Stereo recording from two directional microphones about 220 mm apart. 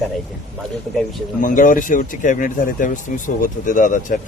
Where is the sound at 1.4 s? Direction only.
35° left (ahead or behind).